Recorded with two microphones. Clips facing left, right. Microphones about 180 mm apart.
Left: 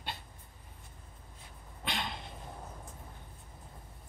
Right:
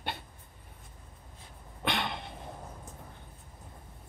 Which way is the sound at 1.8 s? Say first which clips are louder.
Right 6 dB; 65° right (ahead or behind).